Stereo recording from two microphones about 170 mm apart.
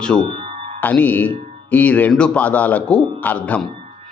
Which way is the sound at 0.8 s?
10° left (ahead or behind).